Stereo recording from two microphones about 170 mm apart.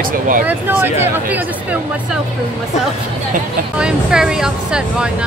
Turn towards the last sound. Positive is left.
turn(degrees=-5)  # may be behind; listen again after turning